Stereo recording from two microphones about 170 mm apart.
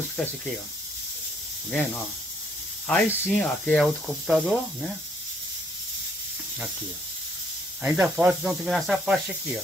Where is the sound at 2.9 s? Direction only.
10° left (ahead or behind).